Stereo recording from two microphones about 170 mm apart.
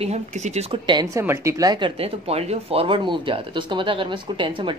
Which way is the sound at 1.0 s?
15° right (ahead or behind).